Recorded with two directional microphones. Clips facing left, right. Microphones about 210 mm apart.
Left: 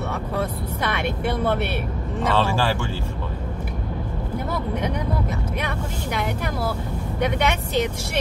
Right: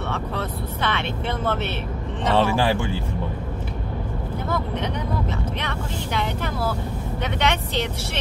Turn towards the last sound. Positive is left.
turn(degrees=10)  # may be behind; listen again after turning